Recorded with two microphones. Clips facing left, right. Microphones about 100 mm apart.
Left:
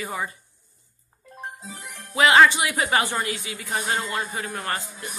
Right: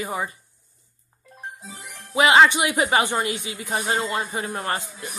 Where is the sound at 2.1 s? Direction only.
20° right (ahead or behind).